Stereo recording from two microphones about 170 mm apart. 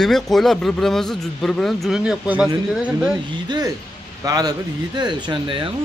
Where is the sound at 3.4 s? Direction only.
25° right (ahead or behind).